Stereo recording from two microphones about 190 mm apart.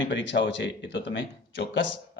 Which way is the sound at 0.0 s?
75° left (ahead or behind).